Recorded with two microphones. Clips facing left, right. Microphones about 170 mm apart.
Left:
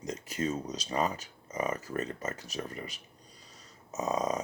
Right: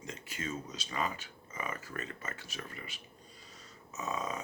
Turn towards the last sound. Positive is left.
turn(degrees=40)  # may be behind; listen again after turning